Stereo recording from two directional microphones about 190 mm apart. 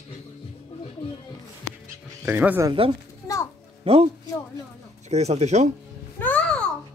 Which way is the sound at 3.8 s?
30° right (ahead or behind).